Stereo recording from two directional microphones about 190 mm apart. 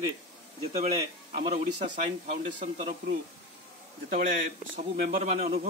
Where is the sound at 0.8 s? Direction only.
35° right (ahead or behind).